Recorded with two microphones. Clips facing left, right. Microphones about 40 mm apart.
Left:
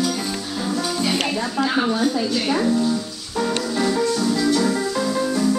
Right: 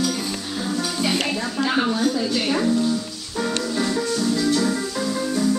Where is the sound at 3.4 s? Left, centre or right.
Centre.